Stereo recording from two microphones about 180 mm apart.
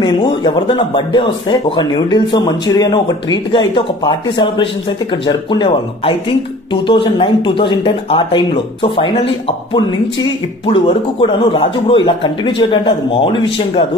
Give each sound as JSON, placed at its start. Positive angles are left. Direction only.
{"t": 0.0, "sound": "speech", "side_deg": 25}
{"t": 10.7, "sound": "speech", "side_deg": 30}